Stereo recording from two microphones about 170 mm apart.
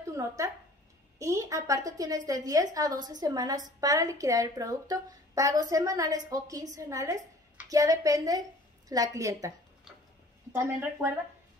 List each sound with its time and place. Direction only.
0.4 s a woman's voice: 20° right (ahead or behind)
10.5 s speech: 15° right (ahead or behind)